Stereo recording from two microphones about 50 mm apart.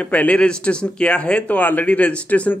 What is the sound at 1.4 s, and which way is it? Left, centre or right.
Speech, left.